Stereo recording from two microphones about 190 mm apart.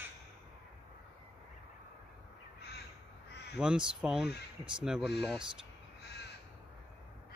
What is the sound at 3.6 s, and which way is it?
Speech, 5° right (ahead or behind).